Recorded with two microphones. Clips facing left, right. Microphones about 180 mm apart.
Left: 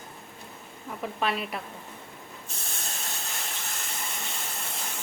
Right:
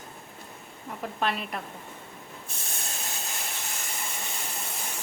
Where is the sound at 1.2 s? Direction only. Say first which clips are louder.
Even; centre (ahead or behind).